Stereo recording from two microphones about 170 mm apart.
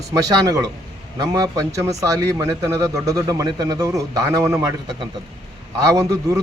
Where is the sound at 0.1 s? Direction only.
20° right (ahead or behind).